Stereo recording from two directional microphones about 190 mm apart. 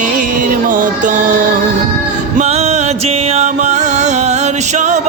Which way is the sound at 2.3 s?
35° right (ahead or behind).